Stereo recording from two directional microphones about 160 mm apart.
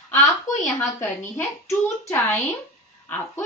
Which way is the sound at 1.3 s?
15° left (ahead or behind).